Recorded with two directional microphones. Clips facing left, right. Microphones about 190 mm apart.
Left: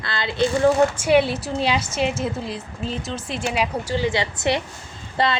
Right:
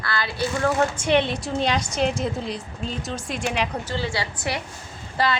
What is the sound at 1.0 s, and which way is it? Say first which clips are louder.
A woman's voice: left 3 dB; 10° left (ahead or behind).